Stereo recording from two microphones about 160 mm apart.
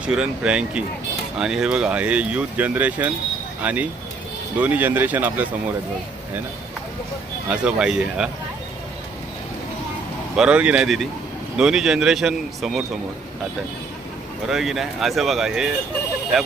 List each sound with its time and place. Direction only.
0.0 s speech: 5° right (ahead or behind)
7.4 s speech: 5° right (ahead or behind)
10.3 s speech: 5° right (ahead or behind)
14.4 s speech: centre (ahead or behind)